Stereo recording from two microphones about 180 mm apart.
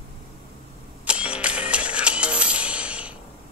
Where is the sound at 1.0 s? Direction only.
5° right (ahead or behind).